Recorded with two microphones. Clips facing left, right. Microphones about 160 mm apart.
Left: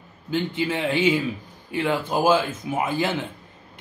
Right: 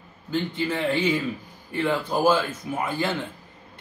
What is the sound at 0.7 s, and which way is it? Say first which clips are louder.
Speech: left 2 dB; 10° left (ahead or behind).